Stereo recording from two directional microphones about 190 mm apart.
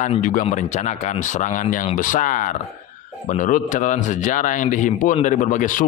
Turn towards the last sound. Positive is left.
turn(degrees=45)  # may be behind; listen again after turning